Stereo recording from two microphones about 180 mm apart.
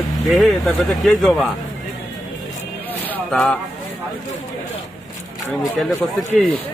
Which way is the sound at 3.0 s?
5° left (ahead or behind).